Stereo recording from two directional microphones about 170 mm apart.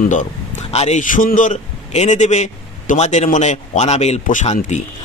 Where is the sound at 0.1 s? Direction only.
45° left (ahead or behind).